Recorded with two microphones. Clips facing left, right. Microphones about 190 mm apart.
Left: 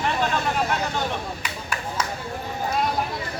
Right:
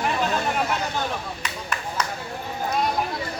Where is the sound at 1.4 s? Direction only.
10° left (ahead or behind).